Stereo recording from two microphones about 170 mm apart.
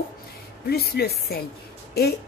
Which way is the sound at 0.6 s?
65° left (ahead or behind).